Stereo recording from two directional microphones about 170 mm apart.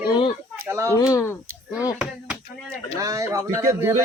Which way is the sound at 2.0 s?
5° right (ahead or behind).